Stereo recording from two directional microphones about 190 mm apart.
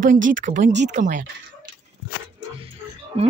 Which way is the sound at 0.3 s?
45° right (ahead or behind).